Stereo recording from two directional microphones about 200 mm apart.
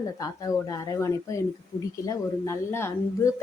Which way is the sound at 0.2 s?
15° left (ahead or behind).